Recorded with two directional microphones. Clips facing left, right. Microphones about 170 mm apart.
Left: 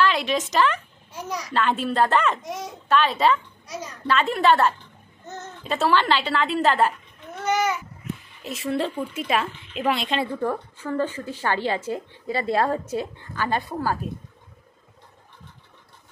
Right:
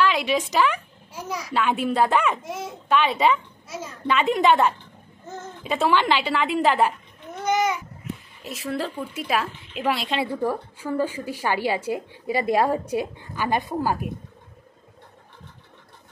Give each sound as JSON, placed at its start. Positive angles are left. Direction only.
{"t": 0.0, "sound": "a woman's voice", "side_deg": -10}
{"t": 4.2, "sound": "a woman's voice", "side_deg": -15}
{"t": 8.5, "sound": "a woman's voice", "side_deg": 0}